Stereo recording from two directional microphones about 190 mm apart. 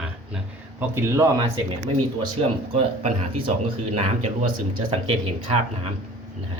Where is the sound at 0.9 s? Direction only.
15° right (ahead or behind).